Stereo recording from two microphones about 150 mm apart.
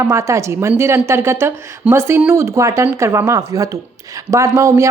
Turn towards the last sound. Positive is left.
turn(degrees=-20)  # may be behind; listen again after turning